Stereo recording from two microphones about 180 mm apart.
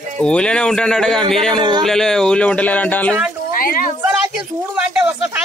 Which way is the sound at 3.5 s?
50° left (ahead or behind).